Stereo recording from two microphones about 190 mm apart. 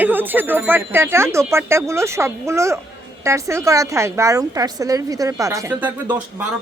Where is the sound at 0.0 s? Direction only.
10° right (ahead or behind).